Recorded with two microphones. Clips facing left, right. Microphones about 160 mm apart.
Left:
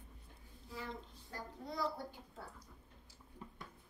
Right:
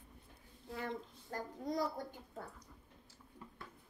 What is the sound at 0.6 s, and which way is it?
Speech, 55° right (ahead or behind).